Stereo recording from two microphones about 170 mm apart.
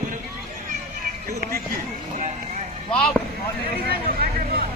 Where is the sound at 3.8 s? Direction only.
65° right (ahead or behind).